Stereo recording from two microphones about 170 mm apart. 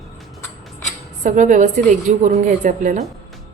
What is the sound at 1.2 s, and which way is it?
A woman's voice, 45° right (ahead or behind).